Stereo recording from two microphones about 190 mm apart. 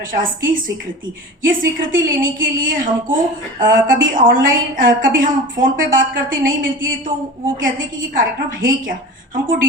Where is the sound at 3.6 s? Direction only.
45° right (ahead or behind).